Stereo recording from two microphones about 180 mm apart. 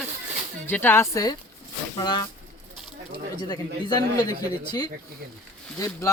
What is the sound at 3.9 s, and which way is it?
Speech, 20° left (ahead or behind).